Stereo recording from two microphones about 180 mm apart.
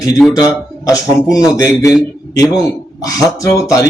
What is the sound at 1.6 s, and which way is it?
A man's voice, 15° left (ahead or behind).